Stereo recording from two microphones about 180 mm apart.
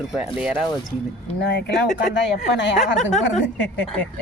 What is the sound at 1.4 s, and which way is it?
Speech, 70° left (ahead or behind).